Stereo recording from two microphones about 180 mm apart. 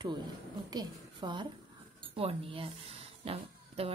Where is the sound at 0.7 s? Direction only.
25° right (ahead or behind).